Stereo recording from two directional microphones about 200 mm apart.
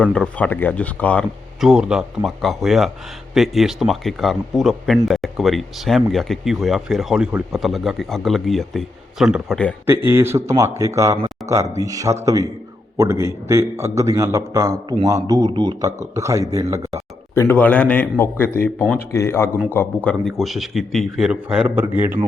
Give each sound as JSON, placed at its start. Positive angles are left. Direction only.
{"t": 0.0, "sound": "a man's voice", "side_deg": 5}
{"t": 1.6, "sound": "speech", "side_deg": -5}
{"t": 9.8, "sound": "a man's voice", "side_deg": -10}
{"t": 11.4, "sound": "a sound", "side_deg": 0}
{"t": 11.8, "sound": "a man's voice", "side_deg": -15}
{"t": 17.3, "sound": "a man's voice", "side_deg": 10}